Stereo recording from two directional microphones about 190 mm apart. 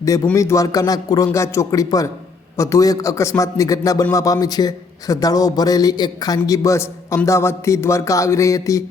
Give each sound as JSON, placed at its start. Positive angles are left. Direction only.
{"t": 0.0, "sound": "a man's voice", "side_deg": 15}